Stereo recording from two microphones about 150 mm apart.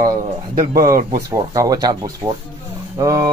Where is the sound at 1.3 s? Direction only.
25° right (ahead or behind).